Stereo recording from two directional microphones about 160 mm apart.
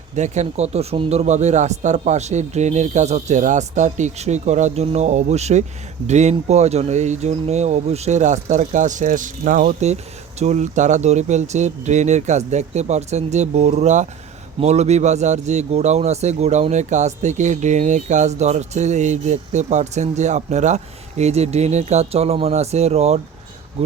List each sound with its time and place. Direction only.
0.2 s speech: 45° right (ahead or behind)